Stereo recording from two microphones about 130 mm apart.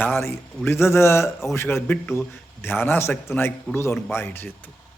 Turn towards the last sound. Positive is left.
turn(degrees=15)  # may be behind; listen again after turning